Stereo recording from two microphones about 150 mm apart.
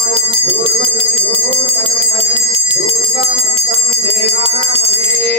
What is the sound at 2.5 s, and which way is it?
Jingle bell, 45° right (ahead or behind).